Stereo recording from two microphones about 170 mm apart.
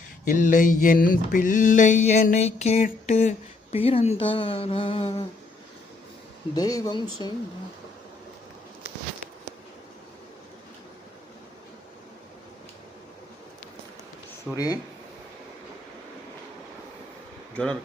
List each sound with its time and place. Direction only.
0.3 s a sound: 50° left (ahead or behind); by 5.2 s 30° left (ahead or behind)
6.5 s speech: 20° left (ahead or behind)
14.5 s speech: 20° left (ahead or behind)
17.5 s speech: 5° left (ahead or behind)